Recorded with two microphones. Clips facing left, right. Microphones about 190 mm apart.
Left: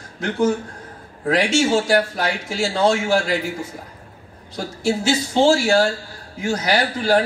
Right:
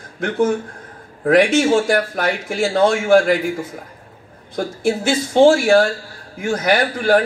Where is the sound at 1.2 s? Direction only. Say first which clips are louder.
Right 5 dB; 55° right (ahead or behind).